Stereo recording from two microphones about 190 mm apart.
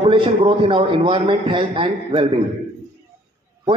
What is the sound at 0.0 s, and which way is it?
A man's voice, 30° right (ahead or behind).